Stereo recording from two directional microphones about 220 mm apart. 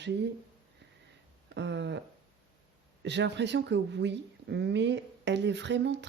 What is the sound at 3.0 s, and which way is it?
Speech, 50° right (ahead or behind).